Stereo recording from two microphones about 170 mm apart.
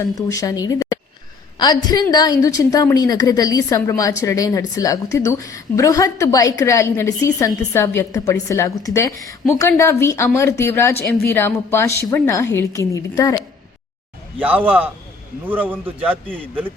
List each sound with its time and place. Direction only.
0.0 s a woman's voice: 20° left (ahead or behind)
14.3 s a man's voice: 10° right (ahead or behind)